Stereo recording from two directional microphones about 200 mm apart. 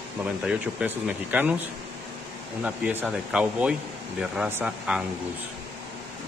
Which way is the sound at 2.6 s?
5° right (ahead or behind).